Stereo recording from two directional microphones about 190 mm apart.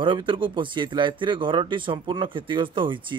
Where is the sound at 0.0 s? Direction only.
25° right (ahead or behind).